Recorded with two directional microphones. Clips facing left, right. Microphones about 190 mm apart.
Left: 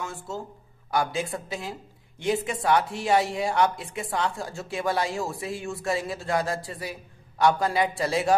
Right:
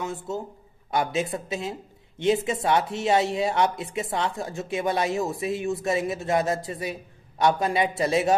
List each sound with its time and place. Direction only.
0.0 s speech: 20° right (ahead or behind)